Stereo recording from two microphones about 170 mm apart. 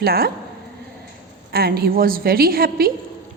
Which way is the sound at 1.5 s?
65° right (ahead or behind).